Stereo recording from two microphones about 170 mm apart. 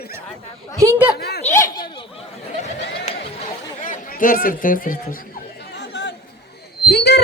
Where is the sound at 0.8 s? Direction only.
15° right (ahead or behind).